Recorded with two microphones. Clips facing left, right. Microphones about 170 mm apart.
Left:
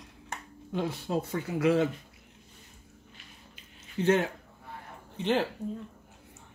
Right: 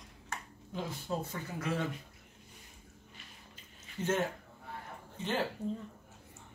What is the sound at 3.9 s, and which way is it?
Speech, 70° left (ahead or behind).